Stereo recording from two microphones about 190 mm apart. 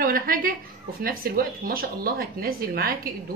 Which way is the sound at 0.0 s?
50° right (ahead or behind).